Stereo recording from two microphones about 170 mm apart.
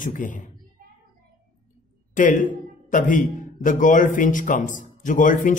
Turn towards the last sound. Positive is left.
turn(degrees=50)  # may be behind; listen again after turning